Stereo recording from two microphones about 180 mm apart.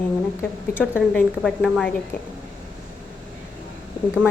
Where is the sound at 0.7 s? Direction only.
5° right (ahead or behind).